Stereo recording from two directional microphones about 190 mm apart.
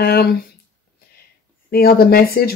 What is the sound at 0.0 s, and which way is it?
Speech, 55° left (ahead or behind).